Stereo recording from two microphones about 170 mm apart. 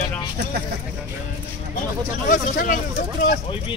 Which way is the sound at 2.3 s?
50° left (ahead or behind).